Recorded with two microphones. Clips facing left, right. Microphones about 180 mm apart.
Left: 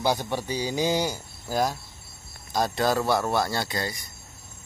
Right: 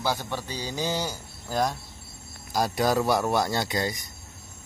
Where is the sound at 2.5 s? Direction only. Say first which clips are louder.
Even; 10° right (ahead or behind).